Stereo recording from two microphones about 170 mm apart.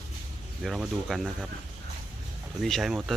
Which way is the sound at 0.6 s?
Centre (ahead or behind).